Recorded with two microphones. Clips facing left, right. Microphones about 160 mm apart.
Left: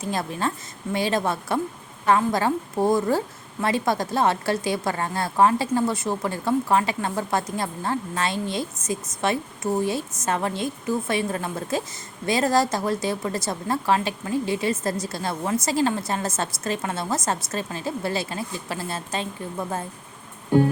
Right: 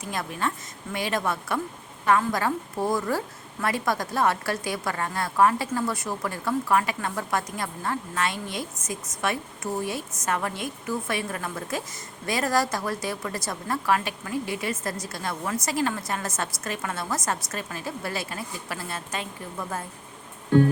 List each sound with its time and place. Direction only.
0.0 s speech: 30° left (ahead or behind)